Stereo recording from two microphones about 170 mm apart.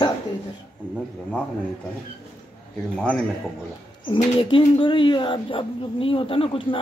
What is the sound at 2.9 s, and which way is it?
Speech, 5° left (ahead or behind).